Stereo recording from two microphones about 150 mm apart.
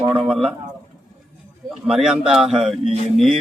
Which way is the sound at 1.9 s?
5° right (ahead or behind).